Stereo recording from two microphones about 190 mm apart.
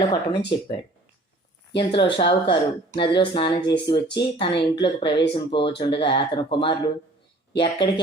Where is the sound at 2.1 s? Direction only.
25° left (ahead or behind).